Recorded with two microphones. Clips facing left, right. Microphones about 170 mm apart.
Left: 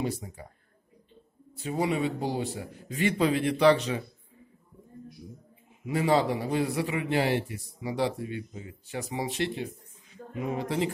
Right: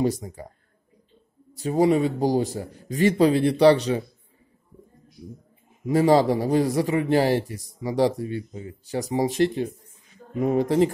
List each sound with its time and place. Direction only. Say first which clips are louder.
0.0 s a man's voice: right 8 dB; 40° right (ahead or behind)
1.5 s a man's voice: right 9 dB; 40° right (ahead or behind)
5.9 s a man's voice: right 7 dB; 40° right (ahead or behind)